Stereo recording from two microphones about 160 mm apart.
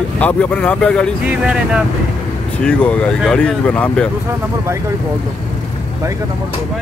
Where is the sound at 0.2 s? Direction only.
10° left (ahead or behind).